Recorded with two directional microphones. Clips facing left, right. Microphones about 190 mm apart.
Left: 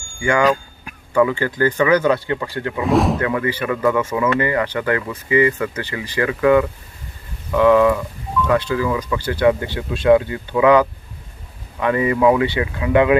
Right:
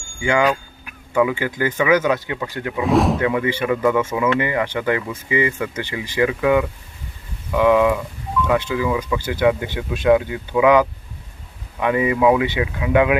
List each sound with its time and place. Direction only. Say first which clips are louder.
0.2 s speech: left 1 dB; 20° right (ahead or behind)
1.1 s speech: left 2 dB; 10° right (ahead or behind)
2.8 s speech: even; centre (ahead or behind)
3.2 s speech: right 1 dB; 20° right (ahead or behind)